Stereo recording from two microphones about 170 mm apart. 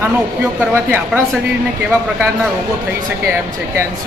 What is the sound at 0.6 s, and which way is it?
Speech, 10° right (ahead or behind).